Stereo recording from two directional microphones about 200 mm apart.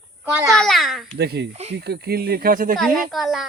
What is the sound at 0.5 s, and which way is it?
Speech, centre (ahead or behind).